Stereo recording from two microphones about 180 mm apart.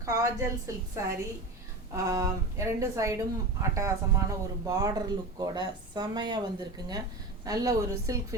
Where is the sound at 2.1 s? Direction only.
15° right (ahead or behind).